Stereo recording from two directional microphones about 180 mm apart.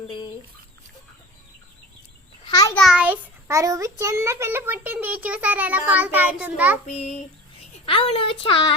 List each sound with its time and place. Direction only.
2.4 s a sound: 20° left (ahead or behind)
2.7 s a child's voice: centre (ahead or behind)
6.8 s child singing: 40° left (ahead or behind)
7.9 s speech: 30° left (ahead or behind)